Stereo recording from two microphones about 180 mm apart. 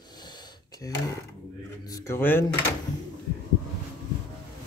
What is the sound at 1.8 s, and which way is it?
Speech, 20° left (ahead or behind).